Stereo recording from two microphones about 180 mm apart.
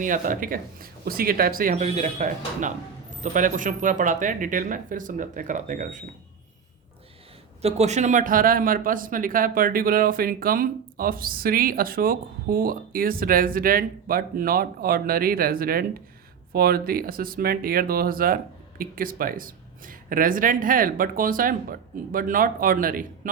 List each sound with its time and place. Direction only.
0.0 s speech: 50° right (ahead or behind)
7.6 s speech: 40° right (ahead or behind)